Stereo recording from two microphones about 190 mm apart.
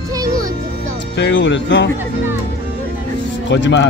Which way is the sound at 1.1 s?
70° left (ahead or behind).